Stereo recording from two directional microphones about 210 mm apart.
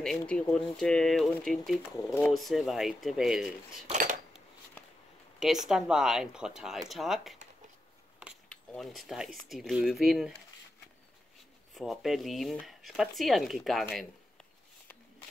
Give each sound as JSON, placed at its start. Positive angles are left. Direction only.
{"t": 0.0, "sound": "speech", "side_deg": 5}
{"t": 3.9, "sound": "a sound", "side_deg": -35}
{"t": 5.7, "sound": "speech", "side_deg": -5}
{"t": 8.5, "sound": "speech", "side_deg": 0}
{"t": 11.7, "sound": "speech", "side_deg": 0}